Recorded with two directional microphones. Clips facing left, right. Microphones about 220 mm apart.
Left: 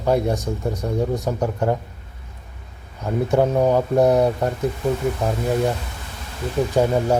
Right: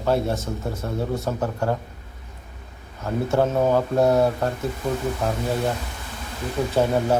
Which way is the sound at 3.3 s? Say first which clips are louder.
Left 2 dB; 15° left (ahead or behind).